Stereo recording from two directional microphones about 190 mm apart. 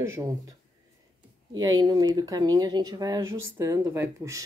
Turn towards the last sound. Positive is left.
turn(degrees=-15)  # may be behind; listen again after turning